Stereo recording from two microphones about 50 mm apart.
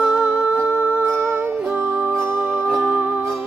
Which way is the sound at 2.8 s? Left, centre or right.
Right.